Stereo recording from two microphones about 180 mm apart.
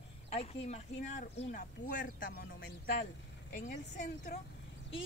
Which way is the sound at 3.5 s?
40° left (ahead or behind).